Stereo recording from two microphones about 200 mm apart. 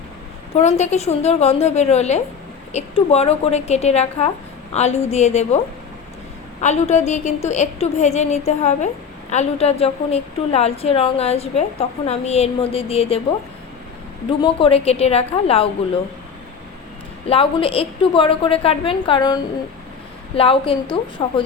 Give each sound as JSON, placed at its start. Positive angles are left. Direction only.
{"t": 0.5, "sound": "a woman's voice", "side_deg": 35}
{"t": 6.6, "sound": "a woman's voice", "side_deg": 35}
{"t": 14.3, "sound": "a woman's voice", "side_deg": 25}
{"t": 17.2, "sound": "a woman's voice", "side_deg": 30}